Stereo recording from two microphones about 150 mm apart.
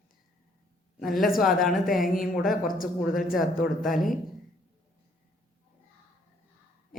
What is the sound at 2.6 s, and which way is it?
Speech, 65° left (ahead or behind).